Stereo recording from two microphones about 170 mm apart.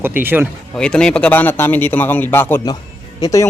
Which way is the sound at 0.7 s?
5° left (ahead or behind).